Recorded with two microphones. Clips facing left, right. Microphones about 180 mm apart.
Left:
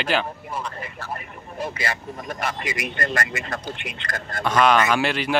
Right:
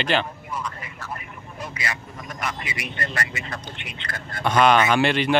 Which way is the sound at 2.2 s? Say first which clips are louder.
Left 4 dB; 35° left (ahead or behind).